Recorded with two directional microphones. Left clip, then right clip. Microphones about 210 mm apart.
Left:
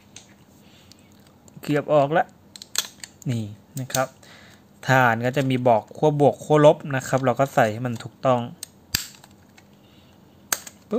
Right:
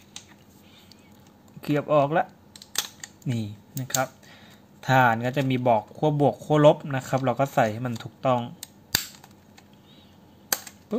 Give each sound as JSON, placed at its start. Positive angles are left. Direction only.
{"t": 1.6, "sound": "speech", "side_deg": 15}